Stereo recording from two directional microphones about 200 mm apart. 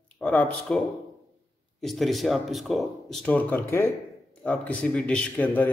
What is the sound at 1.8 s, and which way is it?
Speech, centre (ahead or behind).